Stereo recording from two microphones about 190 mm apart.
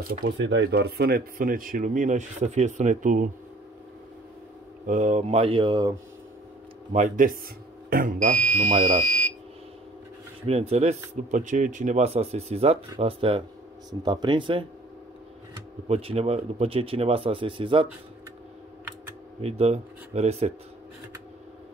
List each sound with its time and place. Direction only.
0.2 s speech: 65° right (ahead or behind); by 3.3 s 45° right (ahead or behind)
4.8 s speech: 40° right (ahead or behind); by 5.9 s 20° right (ahead or behind)
6.9 s speech: 40° right (ahead or behind)
10.4 s speech: 35° right (ahead or behind)
15.9 s speech: 30° right (ahead or behind)
19.4 s speech: 35° right (ahead or behind)